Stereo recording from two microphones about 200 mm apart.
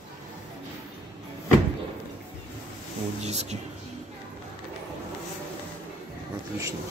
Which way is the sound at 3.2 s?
35° right (ahead or behind).